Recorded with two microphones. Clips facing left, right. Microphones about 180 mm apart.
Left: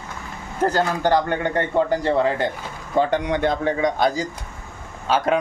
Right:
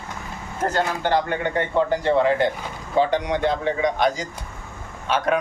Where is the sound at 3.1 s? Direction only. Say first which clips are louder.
Left 1 dB; 50° left (ahead or behind).